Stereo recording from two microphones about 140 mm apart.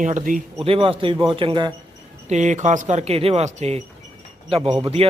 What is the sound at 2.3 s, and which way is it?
A man's voice, 60° right (ahead or behind).